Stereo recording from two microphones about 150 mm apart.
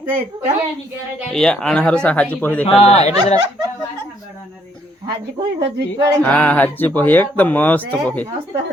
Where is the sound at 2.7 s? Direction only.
40° left (ahead or behind).